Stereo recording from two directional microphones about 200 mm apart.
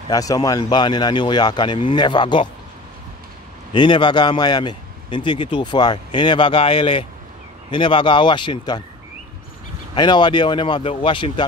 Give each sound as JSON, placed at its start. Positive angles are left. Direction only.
{"t": 0.1, "sound": "speech", "side_deg": 15}
{"t": 3.7, "sound": "speech", "side_deg": 25}
{"t": 9.9, "sound": "speech", "side_deg": 20}